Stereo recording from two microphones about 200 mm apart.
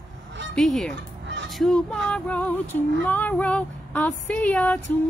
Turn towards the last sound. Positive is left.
turn(degrees=5)  # may be behind; listen again after turning